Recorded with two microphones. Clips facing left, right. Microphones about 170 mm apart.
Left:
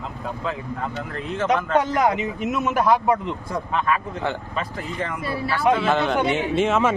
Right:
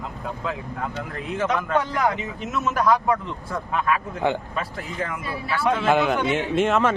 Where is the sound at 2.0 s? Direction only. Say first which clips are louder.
Left 3 dB; 15° left (ahead or behind).